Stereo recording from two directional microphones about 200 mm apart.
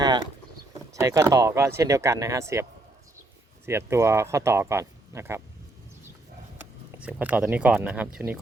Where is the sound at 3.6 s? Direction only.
15° right (ahead or behind).